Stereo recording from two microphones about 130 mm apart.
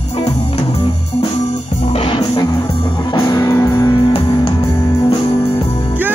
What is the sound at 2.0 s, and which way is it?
Music, 35° left (ahead or behind).